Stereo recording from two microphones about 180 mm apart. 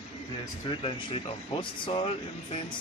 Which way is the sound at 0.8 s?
30° left (ahead or behind).